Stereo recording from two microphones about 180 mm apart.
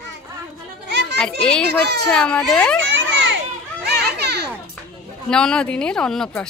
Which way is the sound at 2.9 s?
80° right.